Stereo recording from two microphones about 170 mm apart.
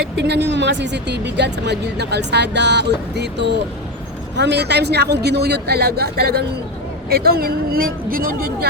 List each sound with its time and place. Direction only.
0.2 s a woman's voice: 90° right; by 8.4 s 55° right (ahead or behind)